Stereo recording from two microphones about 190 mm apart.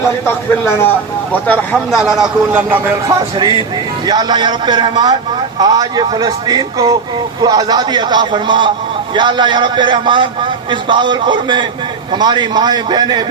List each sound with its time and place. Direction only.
1.3 s a man's voice: 5° left (ahead or behind); by 3.2 s 10° right (ahead or behind)
3.3 s a man's voice: 25° right (ahead or behind)